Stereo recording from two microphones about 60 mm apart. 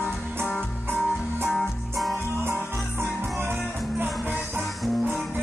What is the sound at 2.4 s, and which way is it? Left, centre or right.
Music, right.